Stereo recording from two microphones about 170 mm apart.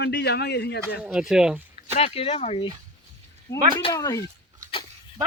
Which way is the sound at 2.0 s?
35° left (ahead or behind).